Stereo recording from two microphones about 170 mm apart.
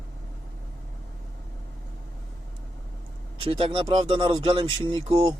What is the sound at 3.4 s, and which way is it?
Speech, 30° right (ahead or behind).